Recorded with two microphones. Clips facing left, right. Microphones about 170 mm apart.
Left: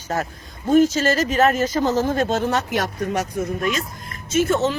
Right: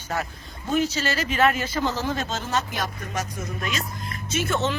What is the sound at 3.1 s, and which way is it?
Speech, 60° left (ahead or behind).